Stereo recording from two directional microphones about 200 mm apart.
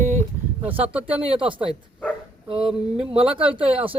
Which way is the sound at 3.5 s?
30° right (ahead or behind).